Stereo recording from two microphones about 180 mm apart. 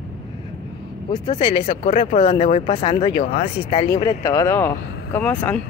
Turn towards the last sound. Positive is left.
turn(degrees=10)  # may be behind; listen again after turning